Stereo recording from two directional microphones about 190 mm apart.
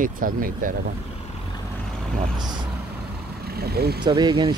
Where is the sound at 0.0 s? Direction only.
45° right (ahead or behind).